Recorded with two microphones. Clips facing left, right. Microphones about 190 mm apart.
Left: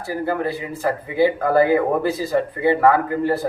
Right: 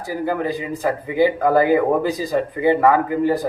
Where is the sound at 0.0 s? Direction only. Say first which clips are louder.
Even; 15° right (ahead or behind).